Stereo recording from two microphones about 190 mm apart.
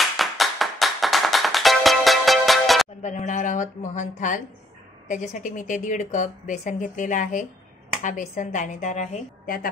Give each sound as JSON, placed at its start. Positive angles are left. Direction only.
{"t": 0.0, "sound": "music", "side_deg": 0}
{"t": 3.0, "sound": "a woman's voice", "side_deg": 40}